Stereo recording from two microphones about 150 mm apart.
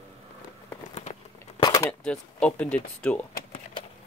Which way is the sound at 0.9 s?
45° left (ahead or behind).